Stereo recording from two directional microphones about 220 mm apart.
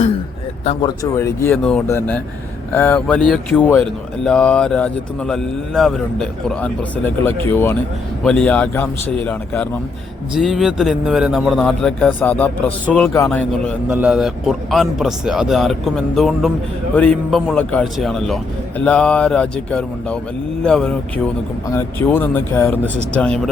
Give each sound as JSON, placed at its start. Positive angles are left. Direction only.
{"t": 0.6, "sound": "speech", "side_deg": 30}
{"t": 0.9, "sound": "a man's voice", "side_deg": 15}